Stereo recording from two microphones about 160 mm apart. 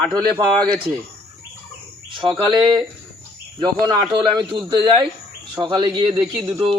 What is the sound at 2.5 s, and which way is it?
A man's voice, 30° right (ahead or behind).